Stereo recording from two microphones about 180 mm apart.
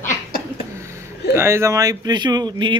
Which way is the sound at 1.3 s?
15° right (ahead or behind).